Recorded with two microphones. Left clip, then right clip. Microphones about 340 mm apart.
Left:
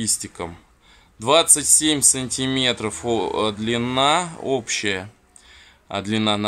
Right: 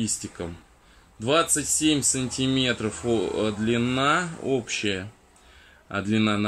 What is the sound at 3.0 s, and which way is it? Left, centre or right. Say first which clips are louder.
Speech: left 3 dB; left.